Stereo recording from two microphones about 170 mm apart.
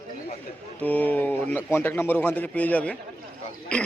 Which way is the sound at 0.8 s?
10° left (ahead or behind).